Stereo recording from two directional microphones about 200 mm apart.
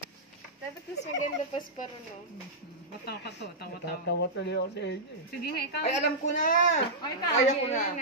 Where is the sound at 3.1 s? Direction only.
55° left (ahead or behind).